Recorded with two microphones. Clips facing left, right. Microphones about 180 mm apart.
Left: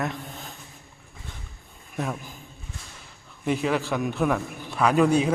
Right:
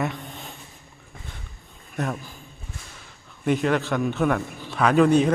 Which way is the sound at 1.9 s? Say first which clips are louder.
Right 2 dB; 5° left (ahead or behind).